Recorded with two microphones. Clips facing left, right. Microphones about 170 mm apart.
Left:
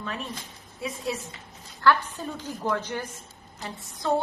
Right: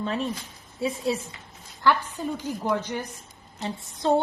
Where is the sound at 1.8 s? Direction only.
15° right (ahead or behind).